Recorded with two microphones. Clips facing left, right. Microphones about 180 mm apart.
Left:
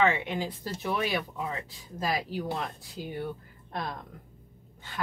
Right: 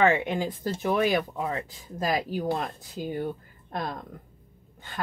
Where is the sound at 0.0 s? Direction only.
50° right (ahead or behind).